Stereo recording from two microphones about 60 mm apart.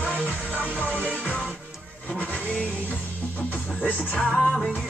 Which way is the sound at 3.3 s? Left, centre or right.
Left.